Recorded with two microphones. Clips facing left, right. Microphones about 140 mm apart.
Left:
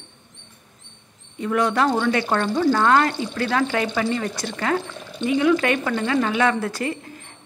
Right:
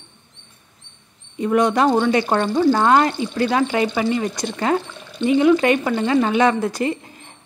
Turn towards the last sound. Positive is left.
turn(degrees=-20)  # may be behind; listen again after turning